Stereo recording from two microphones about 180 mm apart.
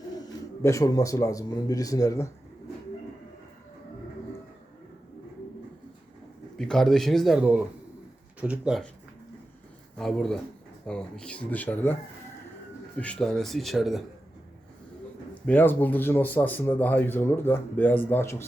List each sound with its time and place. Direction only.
0.6 s speech: 15° left (ahead or behind)
6.6 s speech: 5° left (ahead or behind)
10.0 s speech: centre (ahead or behind)
13.0 s speech: 5° left (ahead or behind)
15.4 s speech: 10° left (ahead or behind)